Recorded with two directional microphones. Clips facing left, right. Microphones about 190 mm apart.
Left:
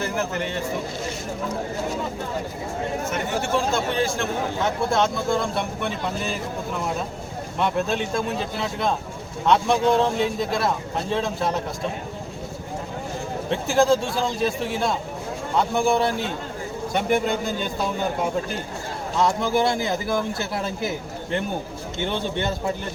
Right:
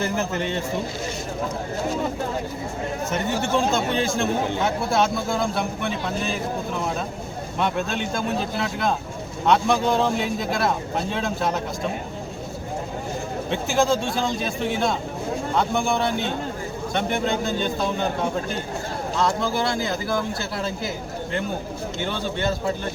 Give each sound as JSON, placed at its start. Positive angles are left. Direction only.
{"t": 0.0, "sound": "speech", "side_deg": -20}
{"t": 3.9, "sound": "speech", "side_deg": -20}
{"t": 4.9, "sound": "speech", "side_deg": -5}
{"t": 7.6, "sound": "speech", "side_deg": 0}
{"t": 13.5, "sound": "a man's voice", "side_deg": 0}
{"t": 19.2, "sound": "a man's voice", "side_deg": 20}
{"t": 21.9, "sound": "a man's voice", "side_deg": 20}